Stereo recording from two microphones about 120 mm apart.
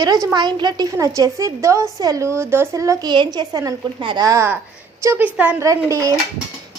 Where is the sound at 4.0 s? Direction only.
45° right (ahead or behind).